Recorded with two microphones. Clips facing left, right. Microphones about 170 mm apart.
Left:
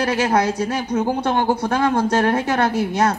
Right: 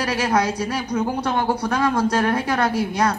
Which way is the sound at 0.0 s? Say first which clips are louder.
Left 2 dB; 25° left (ahead or behind).